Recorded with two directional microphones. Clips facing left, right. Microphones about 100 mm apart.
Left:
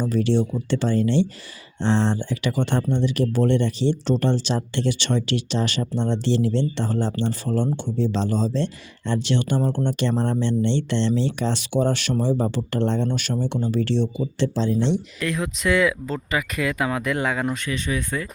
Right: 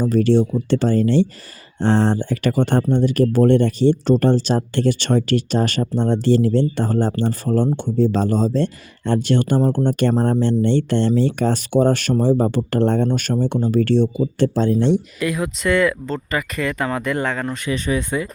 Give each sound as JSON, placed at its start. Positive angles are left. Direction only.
{"t": 0.0, "sound": "speech", "side_deg": -40}
{"t": 15.2, "sound": "speech", "side_deg": -5}
{"t": 17.7, "sound": "speech", "side_deg": -40}